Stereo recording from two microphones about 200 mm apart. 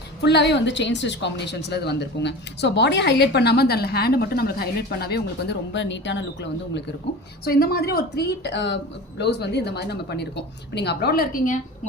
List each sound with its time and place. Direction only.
0.2 s a woman's voice: 55° left (ahead or behind)
7.4 s a woman's voice: 50° left (ahead or behind)